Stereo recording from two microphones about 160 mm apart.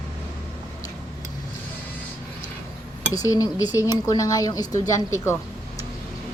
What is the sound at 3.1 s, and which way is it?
A woman's voice, 20° left (ahead or behind).